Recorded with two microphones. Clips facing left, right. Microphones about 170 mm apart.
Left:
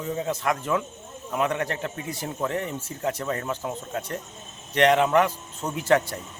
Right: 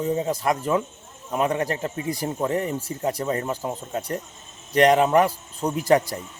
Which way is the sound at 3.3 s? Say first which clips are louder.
Right 3 dB; 35° right (ahead or behind).